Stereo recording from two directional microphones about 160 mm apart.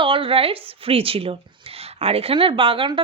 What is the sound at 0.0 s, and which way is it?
A woman's voice, 35° right (ahead or behind).